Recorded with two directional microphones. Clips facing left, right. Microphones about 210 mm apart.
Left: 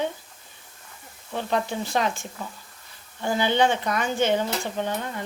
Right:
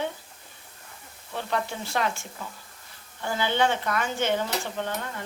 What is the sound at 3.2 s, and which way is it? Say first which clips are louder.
Speech: left 3 dB; 15° left (ahead or behind).